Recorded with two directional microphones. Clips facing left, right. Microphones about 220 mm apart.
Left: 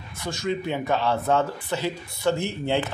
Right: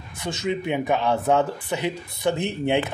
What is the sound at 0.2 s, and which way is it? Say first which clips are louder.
A man's voice: right 1 dB; 20° right (ahead or behind).